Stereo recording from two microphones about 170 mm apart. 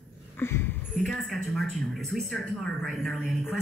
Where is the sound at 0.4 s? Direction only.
15° left (ahead or behind).